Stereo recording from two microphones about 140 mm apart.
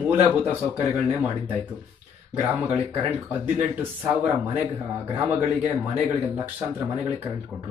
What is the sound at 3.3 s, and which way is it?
Speech, 10° right (ahead or behind).